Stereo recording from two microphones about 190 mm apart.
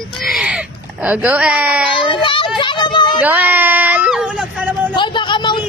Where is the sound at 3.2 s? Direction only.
10° right (ahead or behind).